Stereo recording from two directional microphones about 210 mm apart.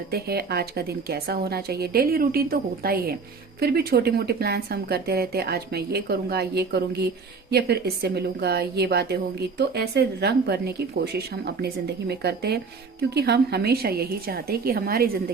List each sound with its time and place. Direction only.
0.1 s speech: 50° right (ahead or behind)